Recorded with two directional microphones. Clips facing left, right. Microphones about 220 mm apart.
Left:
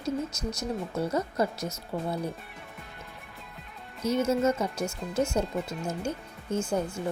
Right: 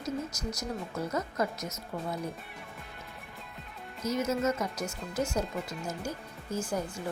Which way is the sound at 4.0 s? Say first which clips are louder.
Left 4 dB; 30° left (ahead or behind).